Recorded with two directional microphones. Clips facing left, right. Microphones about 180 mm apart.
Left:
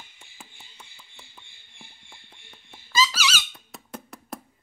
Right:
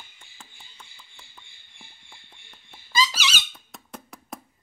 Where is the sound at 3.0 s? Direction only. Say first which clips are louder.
Left 1 dB; 20° right (ahead or behind).